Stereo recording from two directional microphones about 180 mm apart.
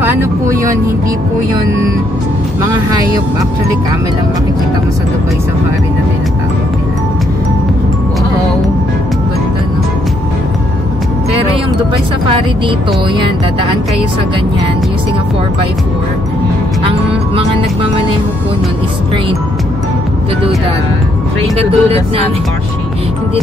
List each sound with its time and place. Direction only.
0.0 s speech: 15° right (ahead or behind)
21.5 s speech: 30° right (ahead or behind)